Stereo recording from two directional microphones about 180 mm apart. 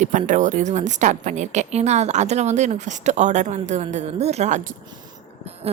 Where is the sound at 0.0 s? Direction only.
45° right (ahead or behind).